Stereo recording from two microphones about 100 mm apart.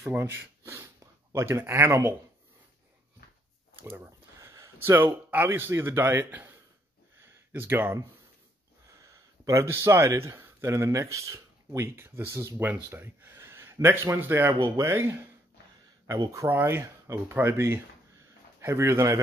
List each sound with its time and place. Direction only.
0.1 s speech: 20° right (ahead or behind)
3.9 s a sound: 25° right (ahead or behind)
4.8 s speech: 25° right (ahead or behind)
7.2 s a sound: 20° right (ahead or behind)
9.1 s speech: 30° right (ahead or behind)
16.4 s speech: 20° right (ahead or behind)